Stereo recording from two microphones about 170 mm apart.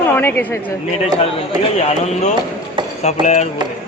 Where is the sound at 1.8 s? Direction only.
40° left (ahead or behind).